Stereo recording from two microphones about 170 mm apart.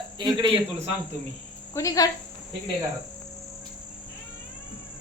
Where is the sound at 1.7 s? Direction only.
20° left (ahead or behind).